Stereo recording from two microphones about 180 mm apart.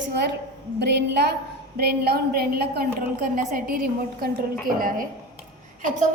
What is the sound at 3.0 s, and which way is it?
A woman's voice, 50° right (ahead or behind).